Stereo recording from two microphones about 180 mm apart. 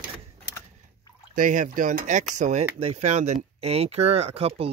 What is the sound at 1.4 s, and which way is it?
Speech, 45° right (ahead or behind).